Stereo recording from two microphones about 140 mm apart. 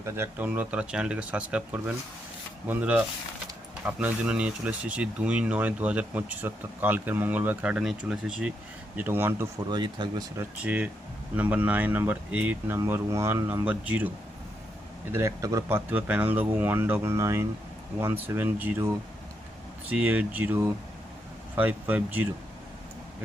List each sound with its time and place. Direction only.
0.0 s speech: 15° right (ahead or behind)
9.6 s speech: 30° right (ahead or behind)
10.6 s speech: 10° right (ahead or behind)
15.1 s speech: 20° right (ahead or behind)